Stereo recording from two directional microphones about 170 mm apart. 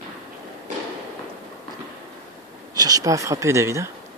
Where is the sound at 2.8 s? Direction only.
20° right (ahead or behind).